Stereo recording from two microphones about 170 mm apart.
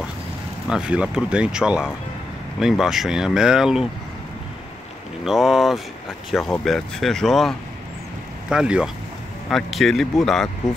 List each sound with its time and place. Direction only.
0.7 s speech: 5° right (ahead or behind)
5.2 s speech: centre (ahead or behind)